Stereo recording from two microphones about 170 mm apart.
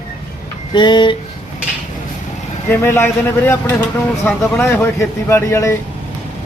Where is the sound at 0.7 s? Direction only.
25° left (ahead or behind).